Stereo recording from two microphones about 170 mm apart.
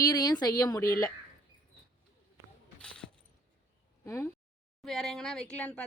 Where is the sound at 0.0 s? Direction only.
20° left (ahead or behind).